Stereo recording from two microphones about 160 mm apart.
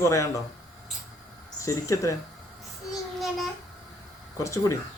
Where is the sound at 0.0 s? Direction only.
20° left (ahead or behind).